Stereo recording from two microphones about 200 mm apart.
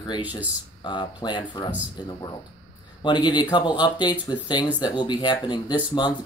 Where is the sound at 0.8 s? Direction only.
20° left (ahead or behind).